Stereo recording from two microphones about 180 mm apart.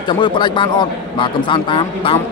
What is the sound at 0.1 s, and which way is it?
Speech, 25° left (ahead or behind).